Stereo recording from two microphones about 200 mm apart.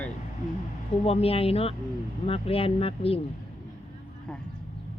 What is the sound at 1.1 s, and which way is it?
Speech, 30° left (ahead or behind).